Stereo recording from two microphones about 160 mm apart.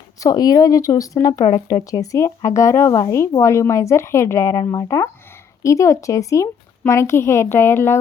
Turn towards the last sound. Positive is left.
turn(degrees=15)  # may be behind; listen again after turning